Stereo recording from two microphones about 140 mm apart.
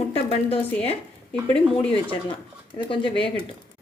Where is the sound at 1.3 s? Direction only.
10° left (ahead or behind).